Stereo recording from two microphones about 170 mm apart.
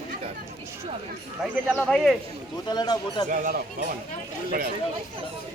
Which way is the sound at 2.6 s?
25° left (ahead or behind).